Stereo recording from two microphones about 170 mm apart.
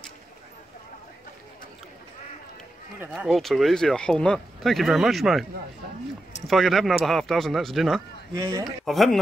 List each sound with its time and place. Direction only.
3.3 s speech: centre (ahead or behind)
6.4 s speech: centre (ahead or behind)
8.4 s speech: 20° right (ahead or behind)
8.6 s speech: centre (ahead or behind)